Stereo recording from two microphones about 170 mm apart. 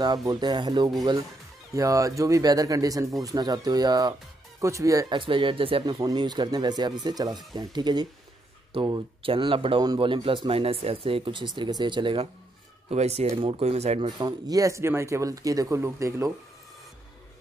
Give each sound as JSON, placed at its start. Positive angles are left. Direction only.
{"t": 0.0, "sound": "speech", "side_deg": -25}